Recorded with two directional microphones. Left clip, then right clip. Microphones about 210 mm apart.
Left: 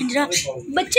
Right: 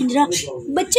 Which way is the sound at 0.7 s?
10° right (ahead or behind).